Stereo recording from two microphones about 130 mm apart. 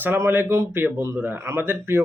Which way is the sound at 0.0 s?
15° right (ahead or behind).